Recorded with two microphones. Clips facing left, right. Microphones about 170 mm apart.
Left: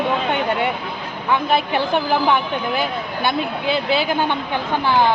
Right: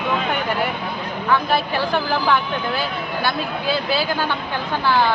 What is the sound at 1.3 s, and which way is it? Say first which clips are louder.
Speech: left 2 dB; 20° left (ahead or behind).